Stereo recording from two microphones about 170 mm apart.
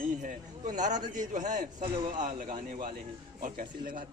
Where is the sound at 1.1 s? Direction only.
50° right (ahead or behind).